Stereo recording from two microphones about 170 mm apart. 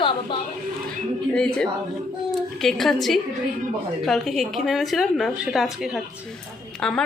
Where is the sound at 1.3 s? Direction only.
5° left (ahead or behind).